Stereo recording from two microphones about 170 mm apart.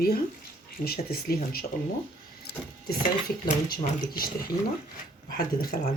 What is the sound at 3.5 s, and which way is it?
Speech, 55° left (ahead or behind).